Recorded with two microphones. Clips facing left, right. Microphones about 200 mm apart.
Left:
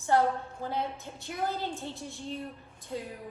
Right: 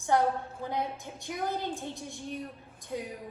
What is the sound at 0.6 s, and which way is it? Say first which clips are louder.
A woman's voice: even; 15° right (ahead or behind).